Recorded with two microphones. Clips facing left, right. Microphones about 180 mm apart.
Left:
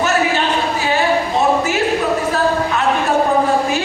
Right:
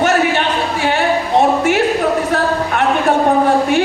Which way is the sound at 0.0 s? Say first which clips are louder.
Right 2 dB; 60° right (ahead or behind).